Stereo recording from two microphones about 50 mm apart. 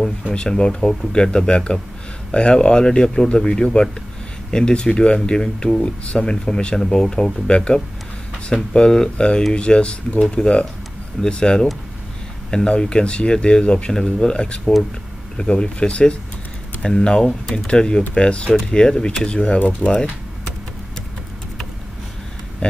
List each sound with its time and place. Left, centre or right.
0.3 s speech: centre
19.6 s speech: left
22.6 s speech: left